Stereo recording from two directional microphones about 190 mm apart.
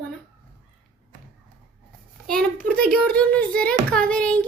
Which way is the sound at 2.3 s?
5° left (ahead or behind).